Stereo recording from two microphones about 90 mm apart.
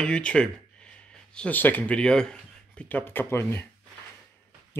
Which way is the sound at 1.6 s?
20° left (ahead or behind).